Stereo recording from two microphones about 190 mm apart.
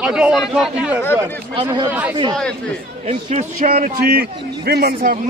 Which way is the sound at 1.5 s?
25° right (ahead or behind).